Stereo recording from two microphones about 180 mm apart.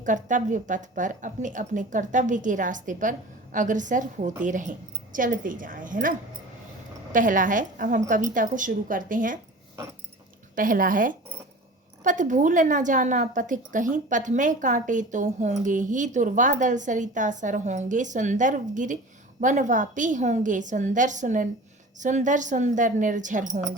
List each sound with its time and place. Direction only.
0.0 s speech: 45° right (ahead or behind)
10.5 s speech: 50° right (ahead or behind)